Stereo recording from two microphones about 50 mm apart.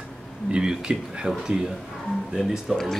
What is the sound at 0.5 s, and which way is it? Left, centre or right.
Speech, centre.